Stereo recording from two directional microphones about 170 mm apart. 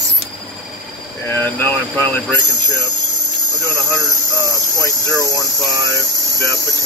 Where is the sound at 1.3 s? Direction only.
10° left (ahead or behind).